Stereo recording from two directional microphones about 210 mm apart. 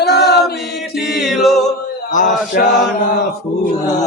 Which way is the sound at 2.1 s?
40° left (ahead or behind).